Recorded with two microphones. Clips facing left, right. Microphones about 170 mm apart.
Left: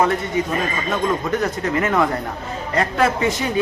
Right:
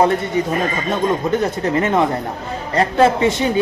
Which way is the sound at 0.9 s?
30° right (ahead or behind).